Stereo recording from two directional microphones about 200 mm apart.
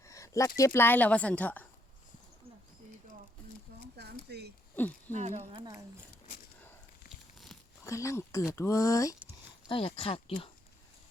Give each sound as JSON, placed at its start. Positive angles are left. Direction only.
{"t": 0.0, "sound": "speech", "side_deg": 15}
{"t": 4.3, "sound": "speech", "side_deg": -55}
{"t": 4.8, "sound": "speech", "side_deg": 10}
{"t": 5.1, "sound": "speech", "side_deg": -35}
{"t": 7.9, "sound": "speech", "side_deg": 15}
{"t": 9.6, "sound": "speech", "side_deg": 25}